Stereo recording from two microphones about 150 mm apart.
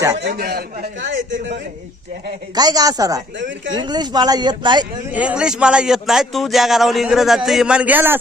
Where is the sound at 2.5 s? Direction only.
25° right (ahead or behind).